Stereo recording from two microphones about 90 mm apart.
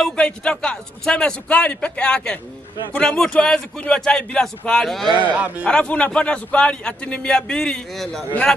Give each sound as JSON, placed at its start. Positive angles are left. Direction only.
{"t": 0.0, "sound": "a man's voice", "side_deg": 10}
{"t": 5.3, "sound": "speech", "side_deg": -15}
{"t": 5.7, "sound": "a man's voice", "side_deg": 10}